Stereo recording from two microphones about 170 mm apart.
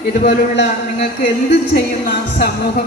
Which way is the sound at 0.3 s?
90° left.